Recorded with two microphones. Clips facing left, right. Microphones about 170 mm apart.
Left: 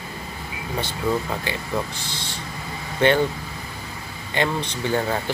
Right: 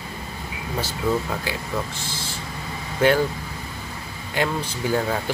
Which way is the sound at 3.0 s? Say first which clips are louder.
Even; 5° right (ahead or behind).